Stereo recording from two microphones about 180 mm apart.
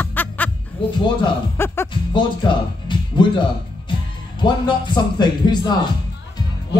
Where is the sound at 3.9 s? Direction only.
25° left (ahead or behind).